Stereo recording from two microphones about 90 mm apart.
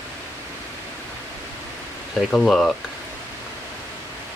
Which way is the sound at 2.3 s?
5° left (ahead or behind).